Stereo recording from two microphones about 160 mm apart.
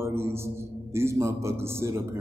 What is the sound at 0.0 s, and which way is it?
Speech, 15° right (ahead or behind).